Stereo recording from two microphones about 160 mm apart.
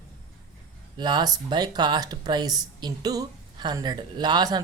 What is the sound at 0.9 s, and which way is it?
A woman's voice, 25° right (ahead or behind).